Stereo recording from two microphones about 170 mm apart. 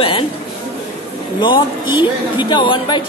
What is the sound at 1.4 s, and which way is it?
A man's voice, 25° left (ahead or behind).